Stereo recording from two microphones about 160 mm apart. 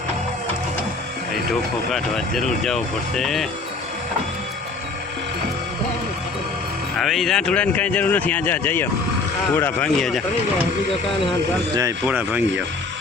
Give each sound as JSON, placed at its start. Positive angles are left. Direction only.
{"t": 1.9, "sound": "speech", "side_deg": 0}
{"t": 6.9, "sound": "speech", "side_deg": 0}
{"t": 10.0, "sound": "speech", "side_deg": 0}
{"t": 11.7, "sound": "speech", "side_deg": -20}
{"t": 12.0, "sound": "speech", "side_deg": -10}